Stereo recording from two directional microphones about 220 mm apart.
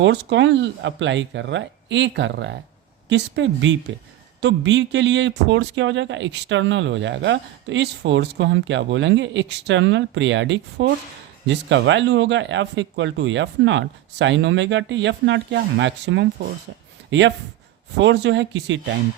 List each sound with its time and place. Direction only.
0.0 s a man's voice: 55° right (ahead or behind)